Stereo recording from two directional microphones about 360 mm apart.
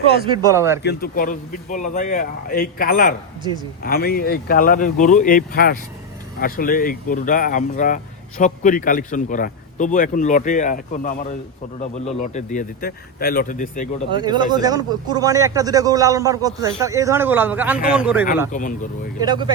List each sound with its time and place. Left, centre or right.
0.3 s speech: centre
0.8 s speech: left
14.2 s a man's voice: centre
18.5 s speech: left
19.2 s speech: centre